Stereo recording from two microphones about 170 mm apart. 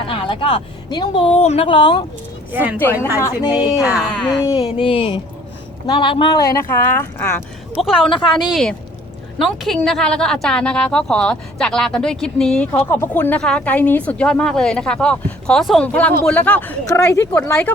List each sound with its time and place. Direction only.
0.1 s a woman's voice: 30° left (ahead or behind)
2.5 s speech: 10° right (ahead or behind)
3.2 s speech: 20° left (ahead or behind)
3.8 s a woman's voice: 5° right (ahead or behind)
4.5 s a woman's voice: 30° left (ahead or behind); by 7.4 s 15° left (ahead or behind)
7.7 s a woman's voice: 5° right (ahead or behind)